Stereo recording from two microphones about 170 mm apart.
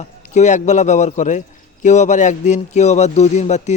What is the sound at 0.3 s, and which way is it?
Speech, 45° left (ahead or behind).